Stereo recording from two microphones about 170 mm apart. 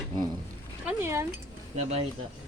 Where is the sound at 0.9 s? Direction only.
15° right (ahead or behind).